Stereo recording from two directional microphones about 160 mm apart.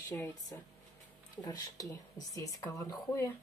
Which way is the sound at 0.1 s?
20° left (ahead or behind).